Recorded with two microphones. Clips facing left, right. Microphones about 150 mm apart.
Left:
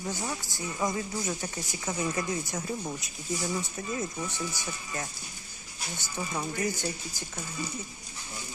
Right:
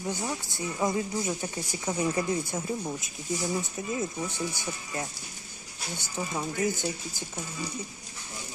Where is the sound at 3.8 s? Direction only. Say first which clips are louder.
Right 2 dB; 15° right (ahead or behind).